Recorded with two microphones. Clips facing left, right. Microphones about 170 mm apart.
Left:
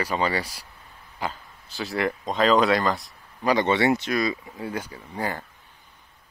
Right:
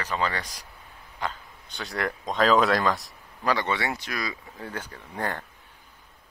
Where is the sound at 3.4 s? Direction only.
20° left (ahead or behind).